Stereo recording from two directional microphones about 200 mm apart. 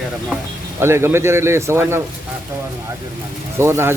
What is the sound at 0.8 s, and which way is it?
A man's voice, 10° right (ahead or behind).